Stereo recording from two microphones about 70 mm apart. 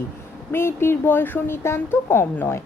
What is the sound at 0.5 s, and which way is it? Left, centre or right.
Speech, left.